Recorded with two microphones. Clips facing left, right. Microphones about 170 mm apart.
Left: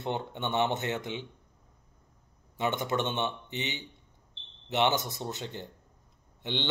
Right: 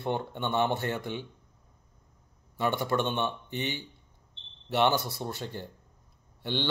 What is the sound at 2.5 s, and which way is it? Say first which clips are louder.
A man's voice: right 2 dB; 20° left (ahead or behind).